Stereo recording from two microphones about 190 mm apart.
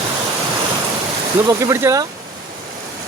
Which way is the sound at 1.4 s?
15° right (ahead or behind).